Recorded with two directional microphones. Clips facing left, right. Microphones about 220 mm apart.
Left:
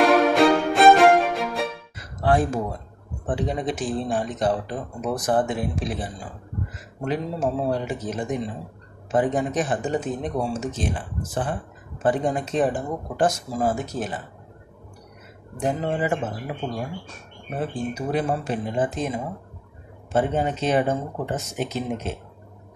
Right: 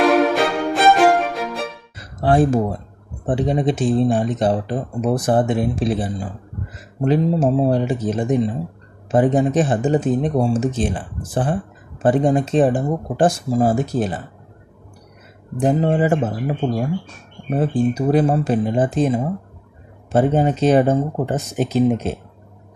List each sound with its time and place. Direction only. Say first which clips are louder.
0.3 s music: left 1 dB; centre (ahead or behind)
2.2 s speech: right 6 dB; 30° right (ahead or behind)
15.5 s speech: right 8 dB; 35° right (ahead or behind)